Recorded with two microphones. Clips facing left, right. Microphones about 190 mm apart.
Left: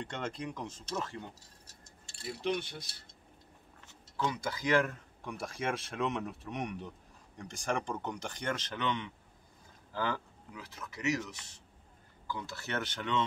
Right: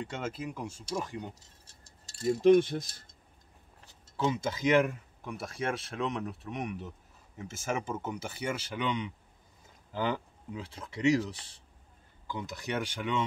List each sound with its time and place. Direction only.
0.0 s speech: 5° right (ahead or behind)
1.7 s speech: 35° right (ahead or behind)
3.8 s speech: 25° right (ahead or behind)
4.9 s speech: centre (ahead or behind); by 11.6 s 30° right (ahead or behind)
12.3 s speech: 20° right (ahead or behind)